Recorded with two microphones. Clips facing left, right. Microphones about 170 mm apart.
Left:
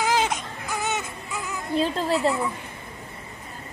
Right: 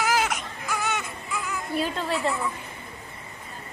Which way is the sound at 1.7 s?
30° left (ahead or behind).